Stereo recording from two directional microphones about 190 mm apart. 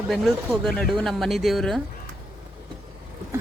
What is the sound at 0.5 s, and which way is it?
Speech, centre (ahead or behind).